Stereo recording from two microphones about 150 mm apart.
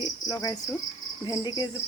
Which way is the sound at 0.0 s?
25° left (ahead or behind).